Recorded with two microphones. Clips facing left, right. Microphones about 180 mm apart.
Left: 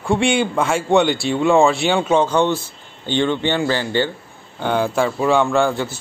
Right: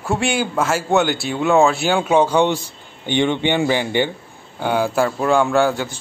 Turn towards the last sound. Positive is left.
turn(degrees=0)  # may be behind; listen again after turning